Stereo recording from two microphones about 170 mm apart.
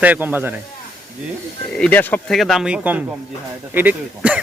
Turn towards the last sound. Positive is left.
turn(degrees=-10)  # may be behind; listen again after turning